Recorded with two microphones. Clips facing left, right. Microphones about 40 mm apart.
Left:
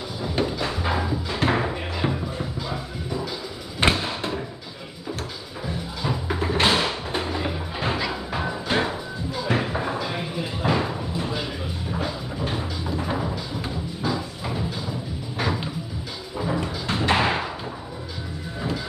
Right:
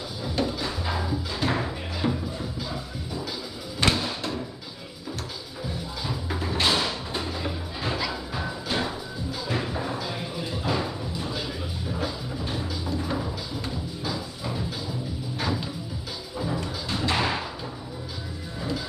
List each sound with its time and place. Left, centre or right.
0.6 s music: left
3.8 s a sound: left
6.0 s music: left
6.5 s a sound: left
9.5 s music: left
12.4 s music: left
16.9 s thump: left